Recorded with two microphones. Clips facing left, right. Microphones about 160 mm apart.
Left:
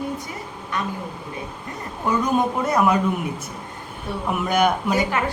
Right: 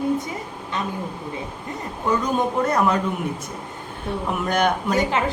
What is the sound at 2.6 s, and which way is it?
Speech, 10° left (ahead or behind).